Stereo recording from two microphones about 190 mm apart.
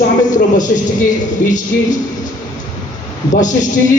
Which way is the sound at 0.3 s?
40° left (ahead or behind).